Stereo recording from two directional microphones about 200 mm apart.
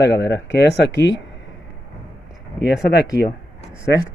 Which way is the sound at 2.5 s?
55° left (ahead or behind).